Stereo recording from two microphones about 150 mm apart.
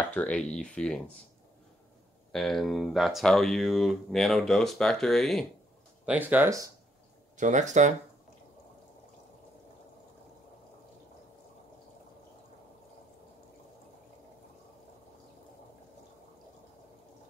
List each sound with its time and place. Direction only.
0.1 s speech: 10° left (ahead or behind)
2.3 s speech: centre (ahead or behind)
6.0 s speech: 10° right (ahead or behind)
7.3 s speech: 55° right (ahead or behind)